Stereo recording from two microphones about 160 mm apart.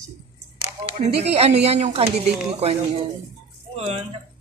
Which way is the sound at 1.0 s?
40° right (ahead or behind).